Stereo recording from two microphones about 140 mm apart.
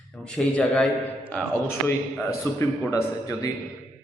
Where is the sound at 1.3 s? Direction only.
10° left (ahead or behind).